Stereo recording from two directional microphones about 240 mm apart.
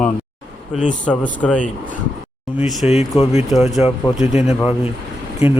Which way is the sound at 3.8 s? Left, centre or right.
Centre.